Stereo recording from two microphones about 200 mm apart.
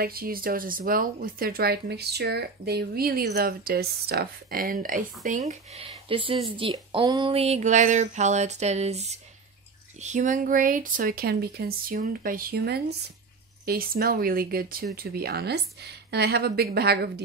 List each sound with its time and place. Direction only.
0.0 s speech: 50° right (ahead or behind)